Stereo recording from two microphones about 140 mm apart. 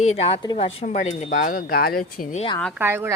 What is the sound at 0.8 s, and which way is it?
Speech, 55° left (ahead or behind).